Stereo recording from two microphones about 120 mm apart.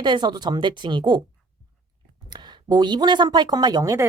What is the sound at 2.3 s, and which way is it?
Speech, 40° right (ahead or behind).